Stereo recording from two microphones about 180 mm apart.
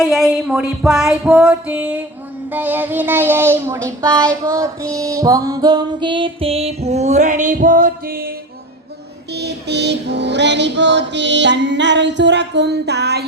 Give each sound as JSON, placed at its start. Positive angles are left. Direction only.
{"t": 0.0, "sound": "music", "side_deg": 0}
{"t": 2.5, "sound": "child singing", "side_deg": -10}
{"t": 9.3, "sound": "female singing", "side_deg": -70}